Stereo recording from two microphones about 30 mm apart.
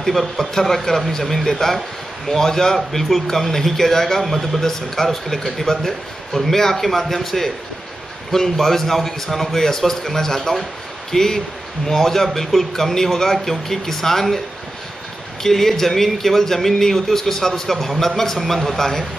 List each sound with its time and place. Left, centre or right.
0.0 s a man's voice: centre
0.9 s speech: left
1.6 s a man's voice: centre
15.4 s a man's voice: centre
18.4 s a man's voice: centre
18.8 s a man's voice: centre